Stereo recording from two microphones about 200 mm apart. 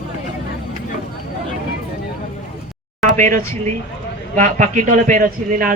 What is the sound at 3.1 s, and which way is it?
A man's voice, 40° right (ahead or behind).